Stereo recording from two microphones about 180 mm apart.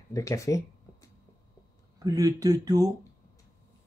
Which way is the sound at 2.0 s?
20° right (ahead or behind).